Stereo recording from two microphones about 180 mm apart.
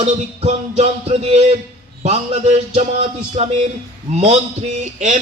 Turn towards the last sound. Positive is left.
turn(degrees=-40)  # may be behind; listen again after turning